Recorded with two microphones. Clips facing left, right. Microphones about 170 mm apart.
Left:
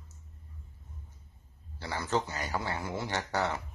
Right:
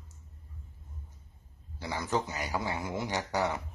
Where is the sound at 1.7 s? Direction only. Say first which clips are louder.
Even; 15° right (ahead or behind).